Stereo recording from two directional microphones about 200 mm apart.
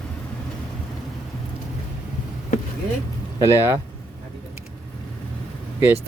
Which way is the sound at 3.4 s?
10° right (ahead or behind).